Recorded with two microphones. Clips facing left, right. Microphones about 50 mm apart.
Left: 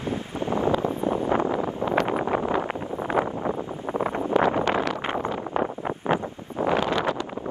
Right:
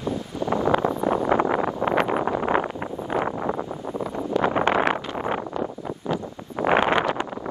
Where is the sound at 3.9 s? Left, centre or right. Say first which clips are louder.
Left 5 dB; left.